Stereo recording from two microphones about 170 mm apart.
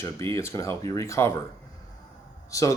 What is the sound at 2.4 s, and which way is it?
Speech, 20° left (ahead or behind).